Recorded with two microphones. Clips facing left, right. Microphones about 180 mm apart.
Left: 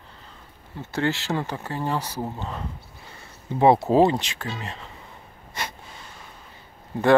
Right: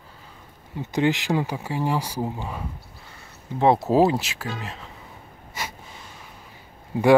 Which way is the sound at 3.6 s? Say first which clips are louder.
Left 1 dB; centre (ahead or behind).